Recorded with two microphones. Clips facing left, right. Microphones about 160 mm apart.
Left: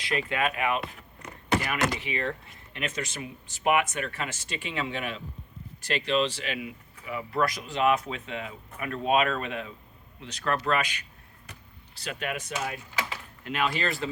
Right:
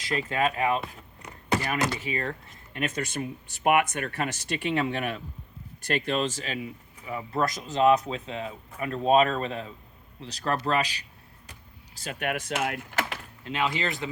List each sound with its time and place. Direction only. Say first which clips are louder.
0.0 s speech: right 2 dB; 35° right (ahead or behind)
2.0 s speech: even; 40° right (ahead or behind)
7.1 s speech: even; 30° right (ahead or behind)
7.7 s speech: right 7 dB; 35° right (ahead or behind)
11.9 s speech: right 3 dB; 50° right (ahead or behind)
13.4 s speech: even; 25° right (ahead or behind)